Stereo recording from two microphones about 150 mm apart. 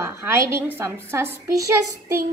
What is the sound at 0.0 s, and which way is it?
A woman's voice, 20° right (ahead or behind).